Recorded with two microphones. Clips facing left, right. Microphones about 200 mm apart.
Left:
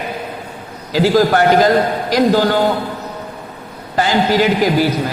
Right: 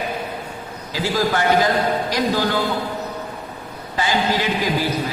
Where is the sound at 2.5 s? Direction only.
60° left (ahead or behind).